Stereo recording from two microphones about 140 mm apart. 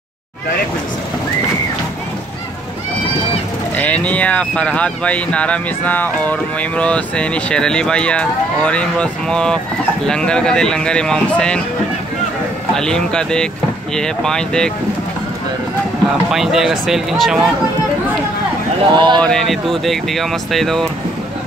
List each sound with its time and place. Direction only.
3.7 s speech: 10° left (ahead or behind)
12.7 s speech: 5° left (ahead or behind)
16.3 s speech: centre (ahead or behind)
18.9 s speech: 30° right (ahead or behind)
19.2 s speech: centre (ahead or behind)